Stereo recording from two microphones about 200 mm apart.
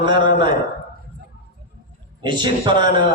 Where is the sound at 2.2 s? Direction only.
20° right (ahead or behind).